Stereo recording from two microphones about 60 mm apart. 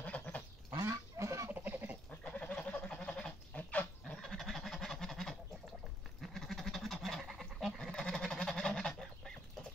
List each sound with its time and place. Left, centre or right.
0.0 s goat: left
0.7 s goose: right
1.5 s livestock: right
2.0 s goat: centre
4.2 s duck: centre
7.9 s goose: centre